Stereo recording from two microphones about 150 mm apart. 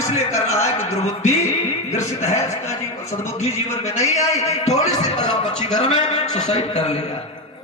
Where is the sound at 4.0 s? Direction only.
50° left (ahead or behind).